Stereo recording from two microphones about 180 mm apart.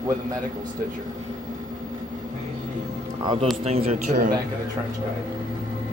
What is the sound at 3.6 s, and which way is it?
Speech, 35° right (ahead or behind).